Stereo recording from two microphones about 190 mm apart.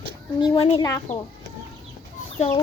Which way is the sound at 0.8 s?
15° left (ahead or behind).